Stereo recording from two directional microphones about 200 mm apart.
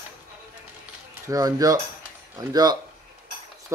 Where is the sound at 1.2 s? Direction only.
15° right (ahead or behind).